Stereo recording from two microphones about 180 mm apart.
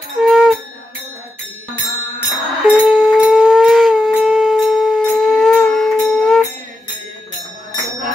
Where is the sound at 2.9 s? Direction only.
Centre (ahead or behind).